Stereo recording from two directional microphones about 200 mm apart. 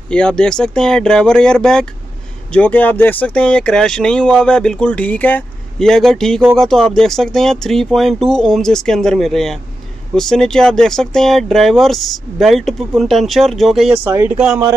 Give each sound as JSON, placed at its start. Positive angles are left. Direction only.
{"t": 0.1, "sound": "speech", "side_deg": 5}
{"t": 13.9, "sound": "speech", "side_deg": -10}